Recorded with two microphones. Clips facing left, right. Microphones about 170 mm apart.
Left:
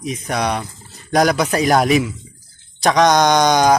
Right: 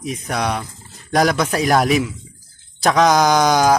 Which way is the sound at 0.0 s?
Centre (ahead or behind).